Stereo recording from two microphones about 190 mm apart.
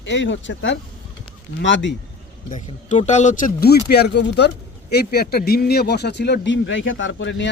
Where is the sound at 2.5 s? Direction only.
40° left (ahead or behind).